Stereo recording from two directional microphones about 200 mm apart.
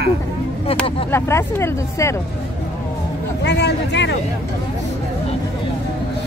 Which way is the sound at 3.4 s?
60° left (ahead or behind).